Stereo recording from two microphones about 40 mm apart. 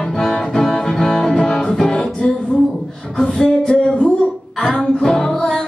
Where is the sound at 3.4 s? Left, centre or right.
Left.